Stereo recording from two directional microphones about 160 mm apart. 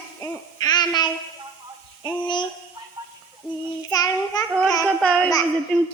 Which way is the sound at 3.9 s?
25° left (ahead or behind).